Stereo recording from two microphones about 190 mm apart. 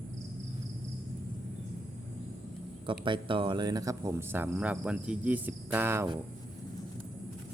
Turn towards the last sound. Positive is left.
turn(degrees=-10)  # may be behind; listen again after turning